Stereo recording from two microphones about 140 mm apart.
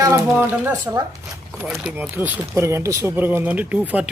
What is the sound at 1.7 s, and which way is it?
Speech, 5° right (ahead or behind).